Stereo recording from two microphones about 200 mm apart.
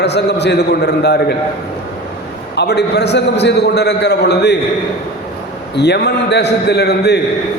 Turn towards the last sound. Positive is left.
turn(degrees=55)  # may be behind; listen again after turning